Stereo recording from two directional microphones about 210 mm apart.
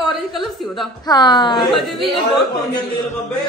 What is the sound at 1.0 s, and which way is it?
Speech, 20° left (ahead or behind).